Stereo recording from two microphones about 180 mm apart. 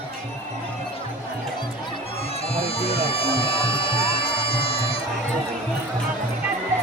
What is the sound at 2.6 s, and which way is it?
Music, 30° left (ahead or behind).